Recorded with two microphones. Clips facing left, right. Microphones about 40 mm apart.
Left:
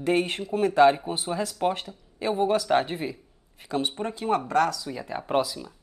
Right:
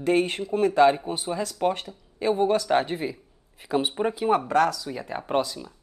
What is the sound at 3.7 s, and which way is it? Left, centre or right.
Speech, centre.